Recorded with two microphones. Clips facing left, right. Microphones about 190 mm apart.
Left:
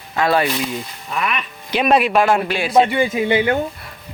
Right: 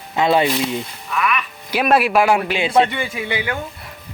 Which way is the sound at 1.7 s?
5° right (ahead or behind).